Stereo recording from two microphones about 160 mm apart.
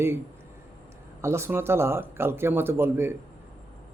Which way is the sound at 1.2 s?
15° right (ahead or behind).